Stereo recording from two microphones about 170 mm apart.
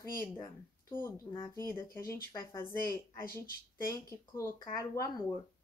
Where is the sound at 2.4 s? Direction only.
15° left (ahead or behind).